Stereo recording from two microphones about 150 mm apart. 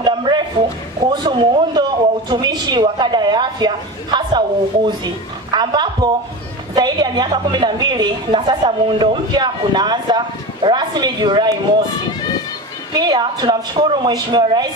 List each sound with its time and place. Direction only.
0.0 s a sound: 30° right (ahead or behind)
1.0 s speech: 30° right (ahead or behind)
12.9 s speech: 30° right (ahead or behind)